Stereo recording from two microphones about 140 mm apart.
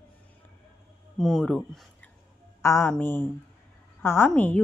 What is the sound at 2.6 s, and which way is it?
A woman's voice, 20° left (ahead or behind).